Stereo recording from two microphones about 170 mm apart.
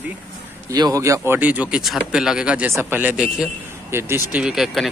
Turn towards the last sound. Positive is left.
turn(degrees=0)  # may be behind; listen again after turning